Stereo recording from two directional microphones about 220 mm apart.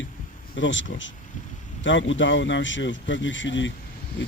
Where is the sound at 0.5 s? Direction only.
55° left (ahead or behind).